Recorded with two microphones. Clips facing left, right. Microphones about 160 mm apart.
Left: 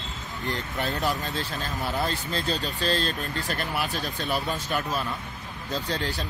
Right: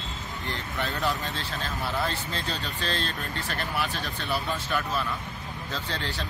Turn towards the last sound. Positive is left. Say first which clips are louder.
# left 4 dB
turn(degrees=40)  # may be behind; listen again after turning